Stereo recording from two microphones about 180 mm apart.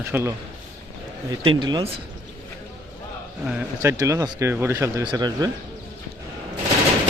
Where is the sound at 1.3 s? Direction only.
25° right (ahead or behind).